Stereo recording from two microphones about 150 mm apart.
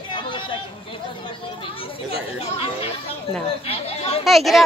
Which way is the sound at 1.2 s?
35° left (ahead or behind).